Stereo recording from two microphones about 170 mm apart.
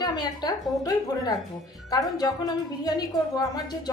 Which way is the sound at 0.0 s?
25° left (ahead or behind).